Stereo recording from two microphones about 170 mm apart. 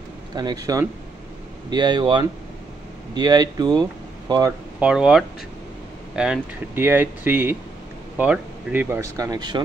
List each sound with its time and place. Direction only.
0.3 s speech: 25° right (ahead or behind)
4.7 s speech: 5° right (ahead or behind); by 9.6 s 25° right (ahead or behind)